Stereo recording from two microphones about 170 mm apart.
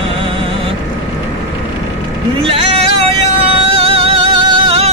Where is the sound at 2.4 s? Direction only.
35° right (ahead or behind).